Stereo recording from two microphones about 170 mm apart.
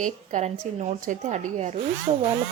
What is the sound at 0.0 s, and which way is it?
A woman's voice, 45° right (ahead or behind).